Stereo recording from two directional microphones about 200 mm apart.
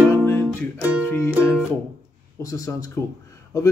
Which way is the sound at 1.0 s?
15° left (ahead or behind).